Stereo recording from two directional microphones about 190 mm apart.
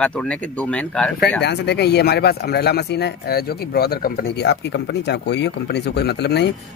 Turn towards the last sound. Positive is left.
turn(degrees=60)  # may be behind; listen again after turning